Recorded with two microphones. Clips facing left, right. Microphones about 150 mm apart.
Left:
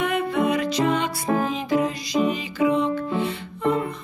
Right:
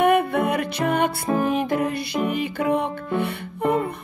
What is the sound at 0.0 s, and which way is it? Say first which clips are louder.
Music: right 4 dB; 60° right (ahead or behind).